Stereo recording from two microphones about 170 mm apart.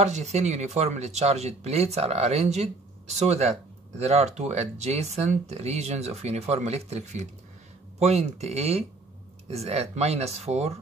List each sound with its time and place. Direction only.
0.0 s speech: 40° right (ahead or behind)